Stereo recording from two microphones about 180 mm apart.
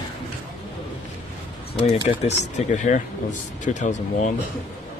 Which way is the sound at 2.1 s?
40° left (ahead or behind).